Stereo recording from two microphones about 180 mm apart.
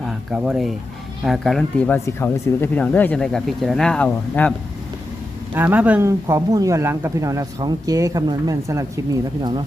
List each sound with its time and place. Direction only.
0.0 s a sound: centre (ahead or behind)
1.2 s speech: centre (ahead or behind)
5.5 s speech: 10° right (ahead or behind)